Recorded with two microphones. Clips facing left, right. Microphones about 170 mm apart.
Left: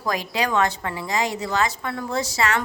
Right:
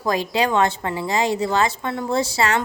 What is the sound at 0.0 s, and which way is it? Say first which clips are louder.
A woman's voice: right 4 dB; 30° right (ahead or behind).